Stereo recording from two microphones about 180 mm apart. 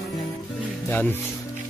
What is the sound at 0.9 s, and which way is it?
Speech, 10° left (ahead or behind).